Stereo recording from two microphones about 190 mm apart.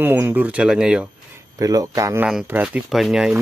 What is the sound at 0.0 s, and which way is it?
Speech, 10° right (ahead or behind).